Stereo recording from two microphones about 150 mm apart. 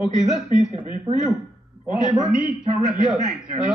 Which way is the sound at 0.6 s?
35° left (ahead or behind).